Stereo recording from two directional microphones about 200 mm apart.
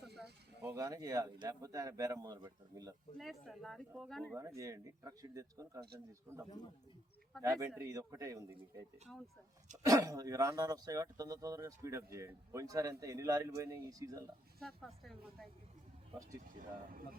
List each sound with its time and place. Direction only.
0.6 s speech: 15° right (ahead or behind)
3.2 s speech: centre (ahead or behind)
4.4 s speech: 15° right (ahead or behind)
7.3 s speech: centre (ahead or behind)
7.8 s speech: 15° right (ahead or behind)
14.6 s speech: centre (ahead or behind)
16.6 s speech: 45° right (ahead or behind)